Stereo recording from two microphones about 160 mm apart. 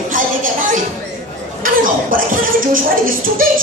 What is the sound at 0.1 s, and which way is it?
Music, 55° right (ahead or behind).